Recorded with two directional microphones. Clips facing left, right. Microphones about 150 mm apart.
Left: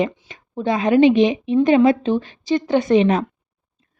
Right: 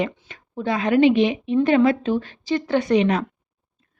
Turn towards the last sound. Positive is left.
turn(degrees=25)  # may be behind; listen again after turning